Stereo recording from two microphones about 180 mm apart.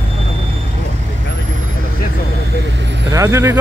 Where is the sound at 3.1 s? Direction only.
15° right (ahead or behind).